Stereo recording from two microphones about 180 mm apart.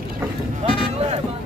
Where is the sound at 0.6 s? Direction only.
35° right (ahead or behind).